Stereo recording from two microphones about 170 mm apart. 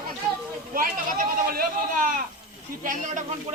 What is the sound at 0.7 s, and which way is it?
Speech, 55° right (ahead or behind).